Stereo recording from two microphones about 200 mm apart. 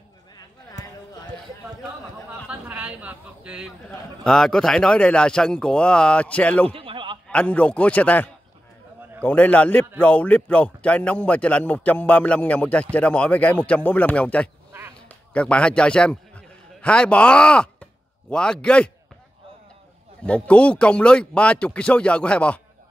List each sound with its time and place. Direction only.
2.4 s a man's voice: 5° right (ahead or behind)
6.7 s a sound: 25° right (ahead or behind)
7.2 s a man's voice: 5° left (ahead or behind)
15.0 s a sound: 5° left (ahead or behind)
18.3 s a man's voice: 5° left (ahead or behind)
20.2 s a man's voice: 5° left (ahead or behind)